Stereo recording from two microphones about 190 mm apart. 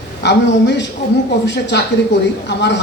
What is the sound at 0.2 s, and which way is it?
A man's voice, 65° left (ahead or behind).